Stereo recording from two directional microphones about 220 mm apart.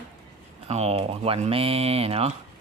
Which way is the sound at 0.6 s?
30° right (ahead or behind).